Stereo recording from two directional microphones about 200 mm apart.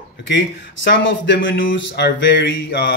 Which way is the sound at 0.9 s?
65° left (ahead or behind).